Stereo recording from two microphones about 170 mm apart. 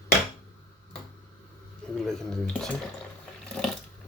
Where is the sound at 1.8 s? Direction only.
5° left (ahead or behind).